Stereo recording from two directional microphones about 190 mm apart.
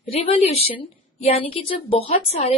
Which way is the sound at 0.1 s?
30° left (ahead or behind).